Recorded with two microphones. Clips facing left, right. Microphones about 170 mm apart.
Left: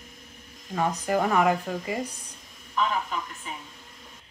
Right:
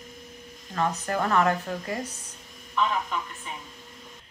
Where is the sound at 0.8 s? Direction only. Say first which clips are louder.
Left 2 dB; 10° left (ahead or behind).